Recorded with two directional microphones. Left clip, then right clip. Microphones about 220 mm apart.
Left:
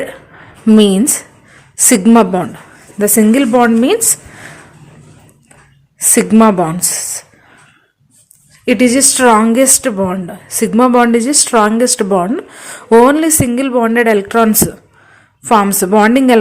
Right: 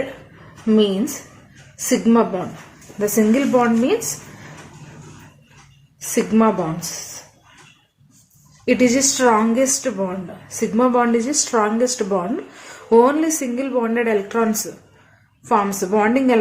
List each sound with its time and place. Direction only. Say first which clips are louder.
0.7 s a woman's voice: left 8 dB; 50° left (ahead or behind)
6.0 s a woman's voice: left 8 dB; 50° left (ahead or behind)
8.6 s speech: left 5 dB; 40° left (ahead or behind)